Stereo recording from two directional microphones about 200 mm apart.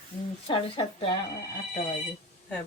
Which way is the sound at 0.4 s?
25° left (ahead or behind).